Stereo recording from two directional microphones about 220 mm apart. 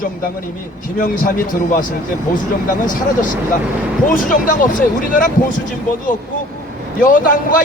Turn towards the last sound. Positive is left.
turn(degrees=40)  # may be behind; listen again after turning